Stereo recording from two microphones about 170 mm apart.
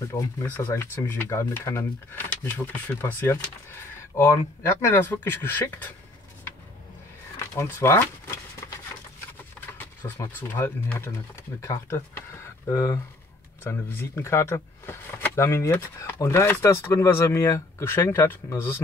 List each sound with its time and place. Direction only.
0.1 s speech: 10° left (ahead or behind)
4.8 s speech: 10° left (ahead or behind)
7.5 s a sound: 15° left (ahead or behind)
10.0 s speech: 10° left (ahead or behind)